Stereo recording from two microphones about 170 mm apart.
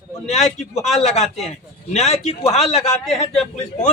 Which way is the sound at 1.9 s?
40° left (ahead or behind).